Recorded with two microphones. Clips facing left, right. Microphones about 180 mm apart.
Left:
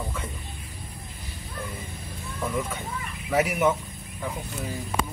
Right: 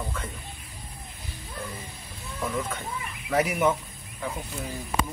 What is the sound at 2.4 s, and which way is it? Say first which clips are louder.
Speech: left 1 dB; 5° left (ahead or behind).